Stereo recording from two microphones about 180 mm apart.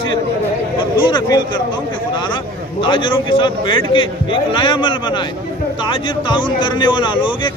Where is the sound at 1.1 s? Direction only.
25° left (ahead or behind).